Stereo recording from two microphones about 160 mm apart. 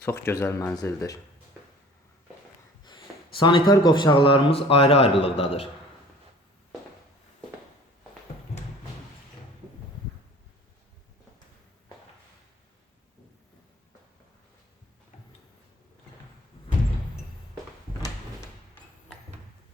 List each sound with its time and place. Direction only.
0.0 s speech: 15° left (ahead or behind)
3.3 s speech: 30° left (ahead or behind)